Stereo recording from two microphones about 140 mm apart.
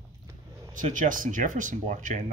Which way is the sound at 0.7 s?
70° right (ahead or behind).